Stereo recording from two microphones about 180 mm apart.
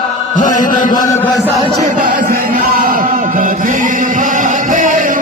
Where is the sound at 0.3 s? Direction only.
50° left (ahead or behind).